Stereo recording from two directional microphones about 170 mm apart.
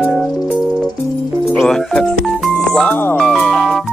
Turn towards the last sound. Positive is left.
turn(degrees=0)  # may be behind; listen again after turning